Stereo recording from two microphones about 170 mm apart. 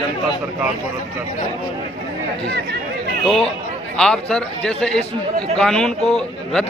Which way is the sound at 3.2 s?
5° left (ahead or behind).